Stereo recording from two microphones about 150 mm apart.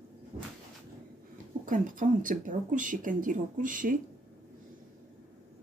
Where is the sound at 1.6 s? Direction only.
60° right (ahead or behind).